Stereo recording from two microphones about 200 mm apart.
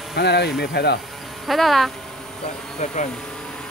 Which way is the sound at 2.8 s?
35° left (ahead or behind).